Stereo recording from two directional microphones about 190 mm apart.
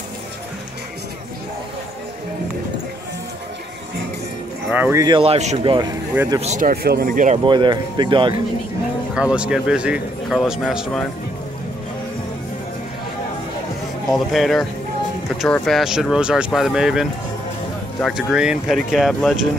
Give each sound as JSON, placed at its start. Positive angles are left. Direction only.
{"t": 4.6, "sound": "speech", "side_deg": -10}
{"t": 5.0, "sound": "speech", "side_deg": -30}
{"t": 5.6, "sound": "speech", "side_deg": -20}
{"t": 6.4, "sound": "speech", "side_deg": -40}
{"t": 6.7, "sound": "speech", "side_deg": -55}
{"t": 7.4, "sound": "speech", "side_deg": -25}
{"t": 9.1, "sound": "speech", "side_deg": -5}
{"t": 14.1, "sound": "speech", "side_deg": 0}